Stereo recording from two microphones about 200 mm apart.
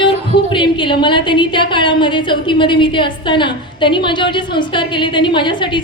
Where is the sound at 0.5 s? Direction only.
25° left (ahead or behind).